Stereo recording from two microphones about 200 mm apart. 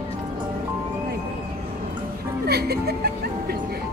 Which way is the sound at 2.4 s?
55° right (ahead or behind).